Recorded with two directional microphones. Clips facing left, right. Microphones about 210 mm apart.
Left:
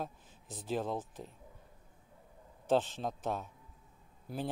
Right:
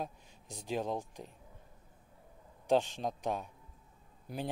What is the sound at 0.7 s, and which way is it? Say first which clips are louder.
Speech: even; 15° right (ahead or behind).